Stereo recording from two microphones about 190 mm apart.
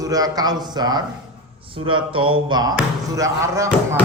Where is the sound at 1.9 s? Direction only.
25° right (ahead or behind).